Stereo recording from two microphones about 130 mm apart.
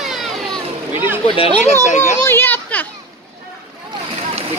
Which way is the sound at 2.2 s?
15° left (ahead or behind).